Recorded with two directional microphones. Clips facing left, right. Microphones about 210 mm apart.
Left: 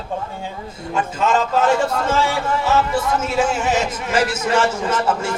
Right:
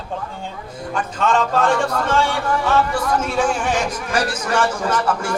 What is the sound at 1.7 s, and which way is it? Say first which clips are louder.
A man's voice: even; 25° left (ahead or behind).